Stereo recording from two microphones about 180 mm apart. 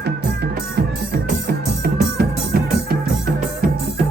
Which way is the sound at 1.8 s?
60° right (ahead or behind).